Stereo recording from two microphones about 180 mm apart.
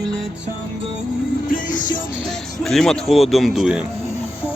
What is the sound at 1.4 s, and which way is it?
Music, 50° left (ahead or behind).